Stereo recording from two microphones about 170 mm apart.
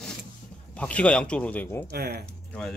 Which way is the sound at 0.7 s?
5° left (ahead or behind).